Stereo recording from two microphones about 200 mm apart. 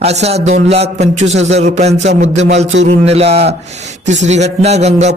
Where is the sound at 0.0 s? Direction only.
30° right (ahead or behind).